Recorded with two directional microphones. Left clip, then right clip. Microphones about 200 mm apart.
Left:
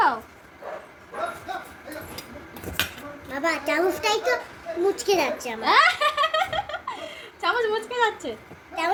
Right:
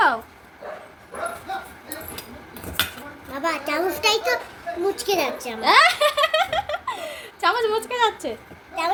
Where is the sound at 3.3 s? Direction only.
Centre (ahead or behind).